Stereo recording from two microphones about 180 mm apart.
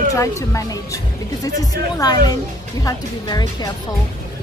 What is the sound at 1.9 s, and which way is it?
Speech, 20° left (ahead or behind).